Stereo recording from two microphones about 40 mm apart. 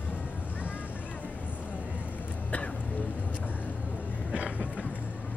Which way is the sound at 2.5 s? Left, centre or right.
Left.